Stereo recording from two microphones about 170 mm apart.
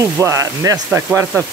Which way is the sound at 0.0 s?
20° right (ahead or behind).